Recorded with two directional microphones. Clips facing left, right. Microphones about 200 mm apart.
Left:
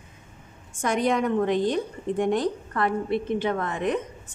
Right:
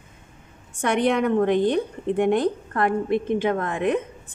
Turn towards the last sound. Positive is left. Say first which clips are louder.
# right 3 dB
turn(degrees=-50)  # may be behind; listen again after turning